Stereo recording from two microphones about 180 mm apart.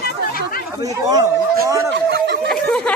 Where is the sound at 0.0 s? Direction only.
55° left (ahead or behind).